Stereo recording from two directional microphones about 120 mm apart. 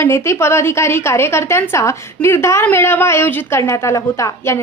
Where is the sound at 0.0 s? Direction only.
25° left (ahead or behind).